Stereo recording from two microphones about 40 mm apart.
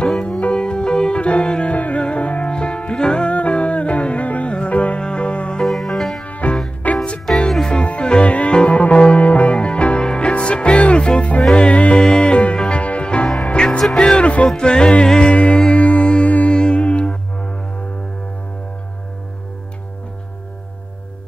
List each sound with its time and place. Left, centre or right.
0.5 s music: left
5.6 s music: centre
6.2 s music: left
7.2 s music: centre
7.8 s music: left
12.0 s music: centre
12.3 s music: left
13.8 s music: centre
14.2 s music: left